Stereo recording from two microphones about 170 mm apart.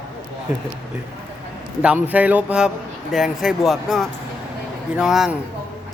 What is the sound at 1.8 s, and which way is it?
Speech, 10° right (ahead or behind).